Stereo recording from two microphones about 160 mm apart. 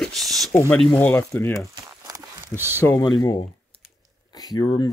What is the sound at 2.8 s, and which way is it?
Speech, 20° left (ahead or behind).